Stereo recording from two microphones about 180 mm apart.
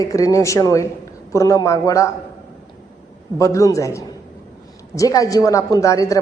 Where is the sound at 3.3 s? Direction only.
20° left (ahead or behind).